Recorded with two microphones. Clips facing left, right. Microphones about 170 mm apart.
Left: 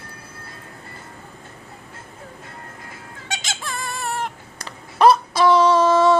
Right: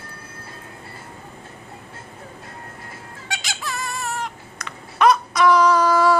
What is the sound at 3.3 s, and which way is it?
Squeak, 25° left (ahead or behind).